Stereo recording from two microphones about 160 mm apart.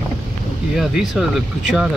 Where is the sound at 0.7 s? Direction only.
Centre (ahead or behind).